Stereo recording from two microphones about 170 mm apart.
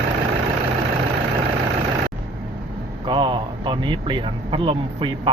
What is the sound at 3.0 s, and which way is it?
Speech, 30° right (ahead or behind).